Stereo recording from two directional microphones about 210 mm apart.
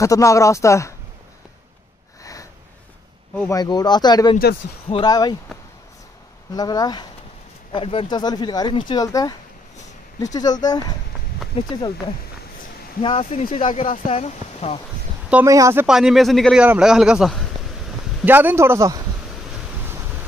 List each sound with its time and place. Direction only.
0.0 s speech: 15° left (ahead or behind)
3.3 s speech: 15° left (ahead or behind)
6.5 s speech: 20° left (ahead or behind)
13.0 s speech: 25° left (ahead or behind)
15.2 s a man's voice: 10° right (ahead or behind)